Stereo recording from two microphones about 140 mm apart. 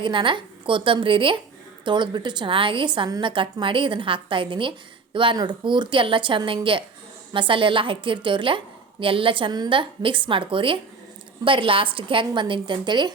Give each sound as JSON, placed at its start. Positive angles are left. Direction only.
{"t": 0.0, "sound": "a woman's voice", "side_deg": -35}